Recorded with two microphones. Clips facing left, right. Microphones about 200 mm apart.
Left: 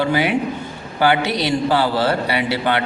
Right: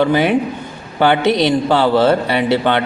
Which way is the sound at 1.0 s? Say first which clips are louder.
Right 4 dB; 20° right (ahead or behind).